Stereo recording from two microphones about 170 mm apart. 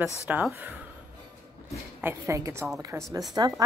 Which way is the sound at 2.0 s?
15° right (ahead or behind).